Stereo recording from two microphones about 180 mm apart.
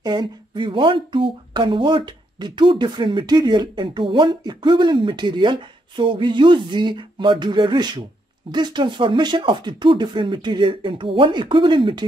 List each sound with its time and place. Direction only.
0.0 s speech: 25° right (ahead or behind)